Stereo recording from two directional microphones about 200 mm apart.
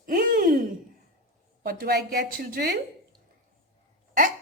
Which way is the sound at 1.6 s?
50° right (ahead or behind).